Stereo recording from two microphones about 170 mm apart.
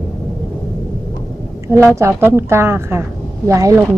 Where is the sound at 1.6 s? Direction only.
15° right (ahead or behind).